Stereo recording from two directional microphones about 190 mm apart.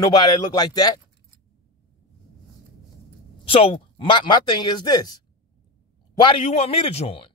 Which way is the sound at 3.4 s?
30° left (ahead or behind).